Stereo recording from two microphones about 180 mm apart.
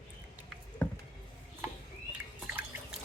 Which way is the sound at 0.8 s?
10° left (ahead or behind).